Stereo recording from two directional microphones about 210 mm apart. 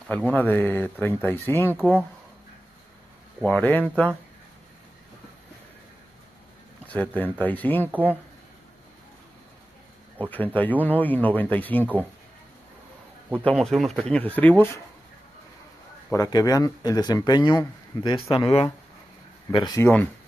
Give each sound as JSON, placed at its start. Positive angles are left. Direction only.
{"t": 0.3, "sound": "speech", "side_deg": 10}
{"t": 3.3, "sound": "speech", "side_deg": 5}
{"t": 6.9, "sound": "speech", "side_deg": 10}
{"t": 7.9, "sound": "speech", "side_deg": -10}
{"t": 10.2, "sound": "speech", "side_deg": 10}
{"t": 13.4, "sound": "speech", "side_deg": 5}
{"t": 16.1, "sound": "speech", "side_deg": 15}